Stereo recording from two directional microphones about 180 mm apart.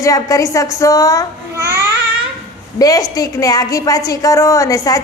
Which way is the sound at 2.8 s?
20° left (ahead or behind).